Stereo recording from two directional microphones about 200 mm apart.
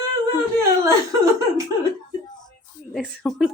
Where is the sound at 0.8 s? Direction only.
15° right (ahead or behind).